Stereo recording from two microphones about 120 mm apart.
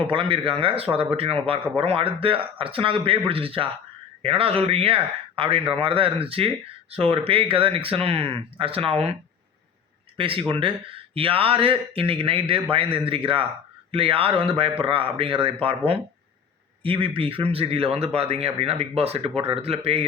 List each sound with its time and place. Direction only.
0.0 s speech: 45° right (ahead or behind)
10.2 s a man's voice: 45° right (ahead or behind)